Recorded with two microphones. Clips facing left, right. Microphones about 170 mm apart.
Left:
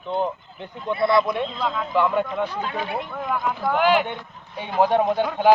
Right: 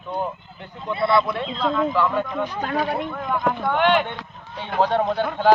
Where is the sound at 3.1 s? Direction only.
5° left (ahead or behind).